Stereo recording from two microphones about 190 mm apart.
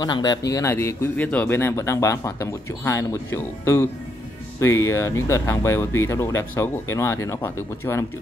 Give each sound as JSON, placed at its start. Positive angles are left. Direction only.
{"t": 0.0, "sound": "speech", "side_deg": 20}